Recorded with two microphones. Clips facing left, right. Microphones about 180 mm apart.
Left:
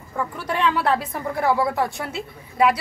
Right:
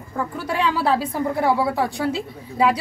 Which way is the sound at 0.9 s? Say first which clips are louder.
Right 3 dB; 30° right (ahead or behind).